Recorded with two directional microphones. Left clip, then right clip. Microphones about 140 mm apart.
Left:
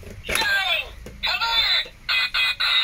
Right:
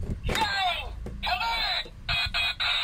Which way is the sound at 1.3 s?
35° right (ahead or behind).